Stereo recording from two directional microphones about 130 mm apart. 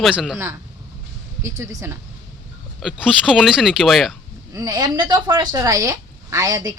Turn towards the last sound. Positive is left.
turn(degrees=-30)  # may be behind; listen again after turning